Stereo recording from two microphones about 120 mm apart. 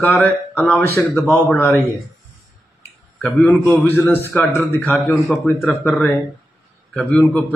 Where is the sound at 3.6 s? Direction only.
15° left (ahead or behind).